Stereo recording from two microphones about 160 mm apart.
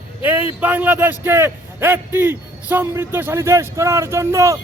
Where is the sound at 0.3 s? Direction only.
10° right (ahead or behind).